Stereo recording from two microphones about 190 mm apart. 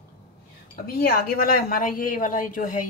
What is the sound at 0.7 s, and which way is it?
Speech, 55° left (ahead or behind).